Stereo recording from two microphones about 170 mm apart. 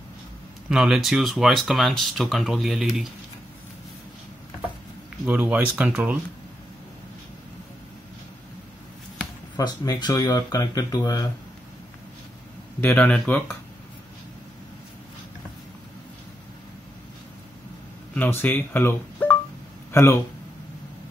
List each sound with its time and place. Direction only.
0.7 s speech: 5° right (ahead or behind)
5.2 s speech: 10° right (ahead or behind)
9.6 s speech: 25° left (ahead or behind)
12.8 s speech: 10° left (ahead or behind)
18.1 s speech: 10° left (ahead or behind)